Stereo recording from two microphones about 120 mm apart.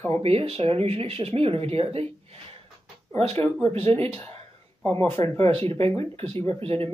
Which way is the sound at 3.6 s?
55° right (ahead or behind).